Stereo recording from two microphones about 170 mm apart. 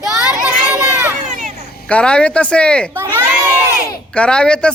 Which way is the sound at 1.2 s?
45° right (ahead or behind).